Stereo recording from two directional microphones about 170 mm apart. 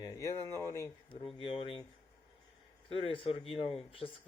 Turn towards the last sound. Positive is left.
turn(degrees=35)  # may be behind; listen again after turning